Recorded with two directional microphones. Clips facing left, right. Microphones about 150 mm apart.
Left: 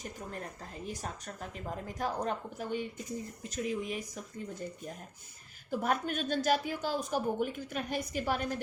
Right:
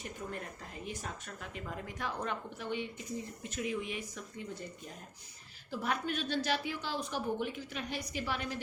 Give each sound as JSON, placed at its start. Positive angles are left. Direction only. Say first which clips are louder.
{"t": 0.0, "sound": "speech", "louder": "even", "side_deg": 35}
{"t": 5.7, "sound": "a woman's voice", "louder": "left 3 dB", "side_deg": 45}